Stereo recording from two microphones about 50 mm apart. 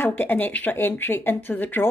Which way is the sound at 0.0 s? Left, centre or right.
Left.